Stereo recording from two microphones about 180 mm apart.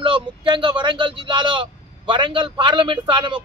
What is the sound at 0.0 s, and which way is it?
Speech, 25° right (ahead or behind).